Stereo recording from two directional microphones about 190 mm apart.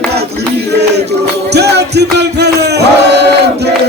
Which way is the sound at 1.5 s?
60° right (ahead or behind).